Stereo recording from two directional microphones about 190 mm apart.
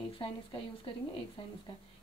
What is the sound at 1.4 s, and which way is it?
Speech, 25° left (ahead or behind).